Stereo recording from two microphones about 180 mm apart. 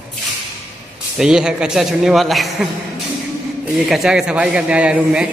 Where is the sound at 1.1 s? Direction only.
5° right (ahead or behind).